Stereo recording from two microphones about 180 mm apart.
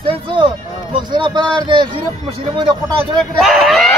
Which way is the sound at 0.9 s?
25° right (ahead or behind).